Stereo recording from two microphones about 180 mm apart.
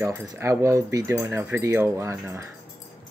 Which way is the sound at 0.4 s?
15° right (ahead or behind).